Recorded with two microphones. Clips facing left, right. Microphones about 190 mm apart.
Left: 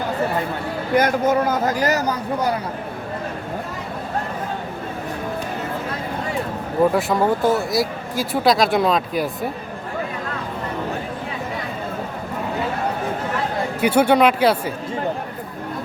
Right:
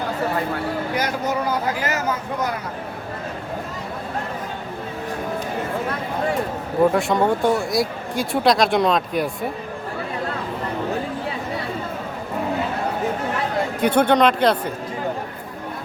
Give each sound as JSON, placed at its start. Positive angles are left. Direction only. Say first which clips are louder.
{"t": 0.9, "sound": "speech", "louder": "left 10 dB", "side_deg": 50}
{"t": 6.9, "sound": "speech", "louder": "even", "side_deg": 0}
{"t": 13.8, "sound": "speech", "louder": "left 1 dB", "side_deg": 10}